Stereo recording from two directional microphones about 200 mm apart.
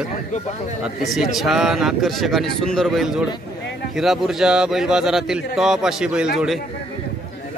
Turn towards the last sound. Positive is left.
turn(degrees=0)  # may be behind; listen again after turning